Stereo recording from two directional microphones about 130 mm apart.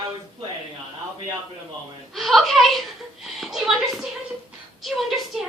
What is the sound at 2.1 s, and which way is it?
A woman's voice, centre (ahead or behind).